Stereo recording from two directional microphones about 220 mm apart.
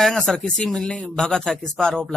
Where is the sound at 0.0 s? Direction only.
5° left (ahead or behind).